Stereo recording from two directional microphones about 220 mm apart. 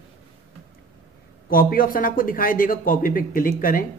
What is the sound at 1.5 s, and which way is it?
Speech, 40° left (ahead or behind).